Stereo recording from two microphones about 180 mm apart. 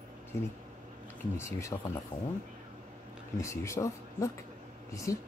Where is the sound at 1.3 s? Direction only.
15° left (ahead or behind).